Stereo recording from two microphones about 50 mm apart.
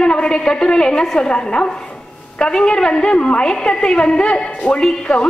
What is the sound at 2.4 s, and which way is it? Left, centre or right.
A woman's voice, centre.